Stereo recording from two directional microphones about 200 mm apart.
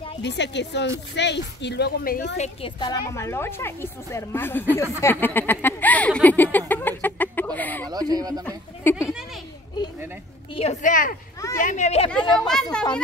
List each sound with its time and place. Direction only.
0.2 s a woman's voice: 60° left (ahead or behind); by 2.9 s 30° left (ahead or behind)
2.9 s speech: 15° left (ahead or behind)
7.9 s speech: 20° right (ahead or behind)
8.8 s speech: 10° left (ahead or behind)
10.5 s a woman's voice: 35° left (ahead or behind)
12.4 s speech: 5° left (ahead or behind)